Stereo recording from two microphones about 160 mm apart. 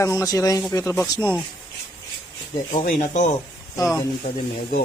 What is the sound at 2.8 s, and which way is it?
Speech, 55° left (ahead or behind).